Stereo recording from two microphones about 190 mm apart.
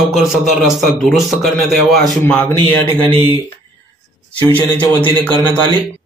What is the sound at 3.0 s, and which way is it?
Speech, 30° right (ahead or behind).